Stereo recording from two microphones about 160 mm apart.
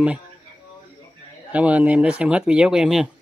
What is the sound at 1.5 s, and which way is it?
Speech, 10° right (ahead or behind).